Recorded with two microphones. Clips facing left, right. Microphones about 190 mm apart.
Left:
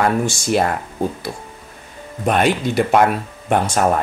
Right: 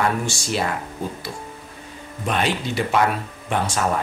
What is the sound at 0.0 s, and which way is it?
Speech, 50° left (ahead or behind).